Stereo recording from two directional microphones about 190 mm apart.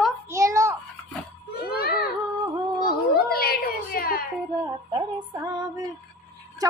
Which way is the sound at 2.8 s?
55° left (ahead or behind).